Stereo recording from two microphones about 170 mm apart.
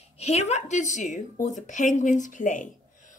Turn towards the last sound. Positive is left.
turn(degrees=50)  # may be behind; listen again after turning